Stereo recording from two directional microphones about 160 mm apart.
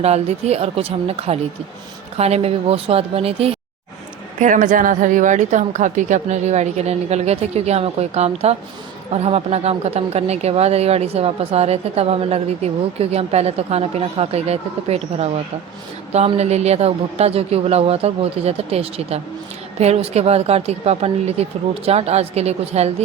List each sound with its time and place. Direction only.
0.0 s speech: 40° right (ahead or behind)
4.4 s a woman's voice: 50° right (ahead or behind)